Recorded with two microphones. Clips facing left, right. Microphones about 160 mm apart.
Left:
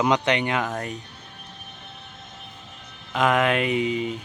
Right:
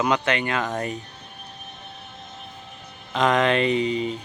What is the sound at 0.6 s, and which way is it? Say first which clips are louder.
Speech: right 2 dB; centre (ahead or behind).